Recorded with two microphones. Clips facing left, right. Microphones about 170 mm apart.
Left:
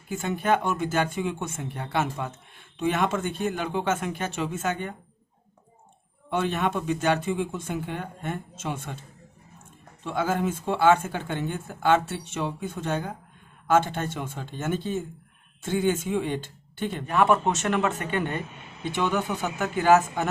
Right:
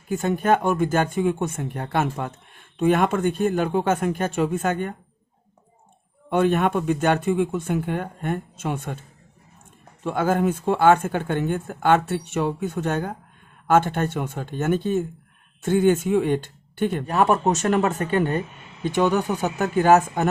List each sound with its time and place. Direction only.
0.1 s speech: 45° right (ahead or behind)
6.3 s speech: 50° right (ahead or behind)
10.0 s speech: 55° right (ahead or behind)
17.1 s speech: 40° right (ahead or behind)